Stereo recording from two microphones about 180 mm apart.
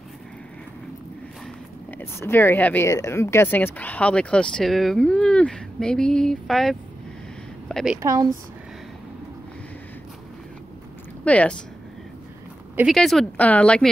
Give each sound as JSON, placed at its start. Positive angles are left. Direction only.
{"t": 2.0, "sound": "a woman's voice", "side_deg": 10}
{"t": 8.0, "sound": "a woman's voice", "side_deg": -20}
{"t": 11.2, "sound": "speech", "side_deg": 5}
{"t": 12.7, "sound": "speech", "side_deg": 0}